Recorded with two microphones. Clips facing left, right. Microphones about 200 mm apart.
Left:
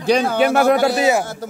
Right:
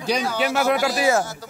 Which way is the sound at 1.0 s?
20° left (ahead or behind).